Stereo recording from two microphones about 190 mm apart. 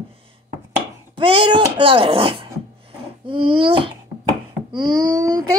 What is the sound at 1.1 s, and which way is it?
A woman's voice, 30° right (ahead or behind).